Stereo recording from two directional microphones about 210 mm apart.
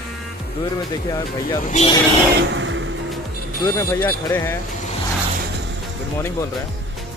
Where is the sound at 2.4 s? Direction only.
60° right (ahead or behind).